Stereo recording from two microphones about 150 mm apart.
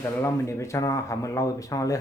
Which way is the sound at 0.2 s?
20° left (ahead or behind).